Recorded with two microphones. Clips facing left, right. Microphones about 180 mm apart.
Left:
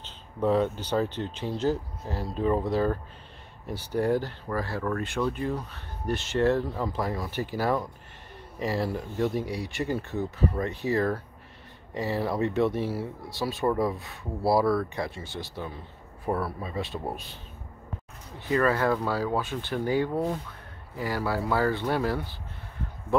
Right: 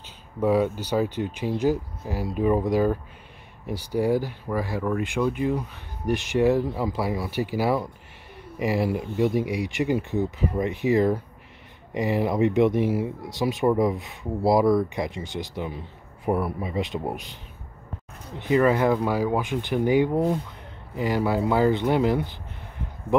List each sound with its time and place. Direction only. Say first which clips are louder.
0.0 s speech: right 2 dB; 10° right (ahead or behind)
18.4 s speech: right 4 dB; 20° right (ahead or behind)